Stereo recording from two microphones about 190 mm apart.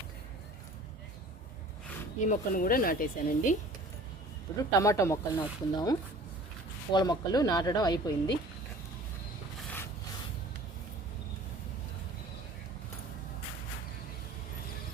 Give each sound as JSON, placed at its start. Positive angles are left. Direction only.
{"t": 2.3, "sound": "speech", "side_deg": 45}
{"t": 4.5, "sound": "a woman's voice", "side_deg": 15}